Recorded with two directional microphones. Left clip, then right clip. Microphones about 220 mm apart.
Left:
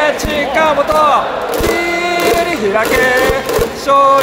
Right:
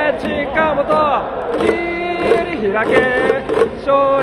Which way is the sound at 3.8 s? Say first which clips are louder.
Left 7 dB; 20° left (ahead or behind).